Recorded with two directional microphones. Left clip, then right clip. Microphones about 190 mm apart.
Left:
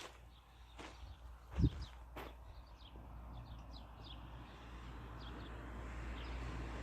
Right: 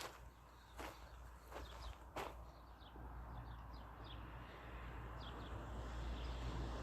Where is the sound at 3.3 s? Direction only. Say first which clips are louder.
Right 1 dB; 65° left (ahead or behind).